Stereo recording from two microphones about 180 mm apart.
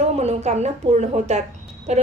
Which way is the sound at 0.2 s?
35° right (ahead or behind).